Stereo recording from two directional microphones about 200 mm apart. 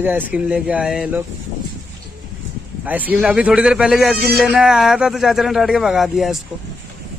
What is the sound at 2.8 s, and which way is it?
A man's voice, 10° right (ahead or behind).